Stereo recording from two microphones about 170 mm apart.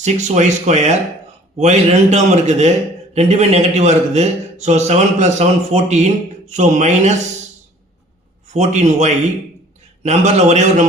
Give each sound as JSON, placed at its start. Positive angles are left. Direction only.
{"t": 0.0, "sound": "a man's voice", "side_deg": -45}
{"t": 8.5, "sound": "a man's voice", "side_deg": -45}